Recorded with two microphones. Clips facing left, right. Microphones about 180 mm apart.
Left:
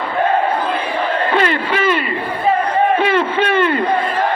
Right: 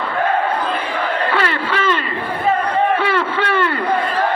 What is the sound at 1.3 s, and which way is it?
Battle cry, 20° left (ahead or behind).